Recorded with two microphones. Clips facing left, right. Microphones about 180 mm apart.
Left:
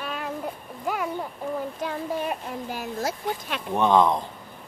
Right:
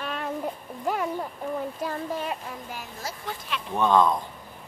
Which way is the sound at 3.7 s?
20° left (ahead or behind).